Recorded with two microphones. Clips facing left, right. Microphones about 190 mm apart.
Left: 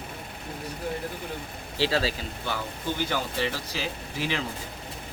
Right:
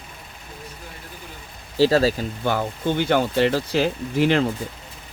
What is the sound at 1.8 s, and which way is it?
Speech, 45° right (ahead or behind).